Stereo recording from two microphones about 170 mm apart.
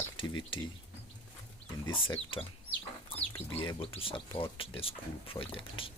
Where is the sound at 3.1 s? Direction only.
30° left (ahead or behind).